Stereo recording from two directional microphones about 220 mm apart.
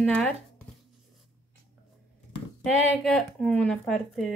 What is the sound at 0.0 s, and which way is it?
Speech, centre (ahead or behind).